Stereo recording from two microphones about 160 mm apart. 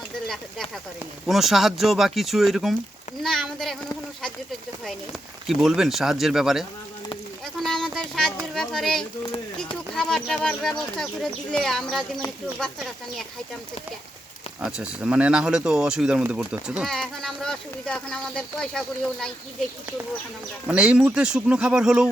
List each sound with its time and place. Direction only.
1.3 s speech: centre (ahead or behind)
5.5 s speech: centre (ahead or behind)
7.6 s a sound: 5° left (ahead or behind)
7.9 s speech: 5° left (ahead or behind)
14.6 s speech: 5° right (ahead or behind)
20.7 s speech: 5° right (ahead or behind)